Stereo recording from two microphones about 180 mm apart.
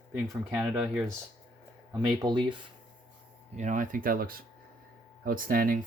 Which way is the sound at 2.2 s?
25° right (ahead or behind).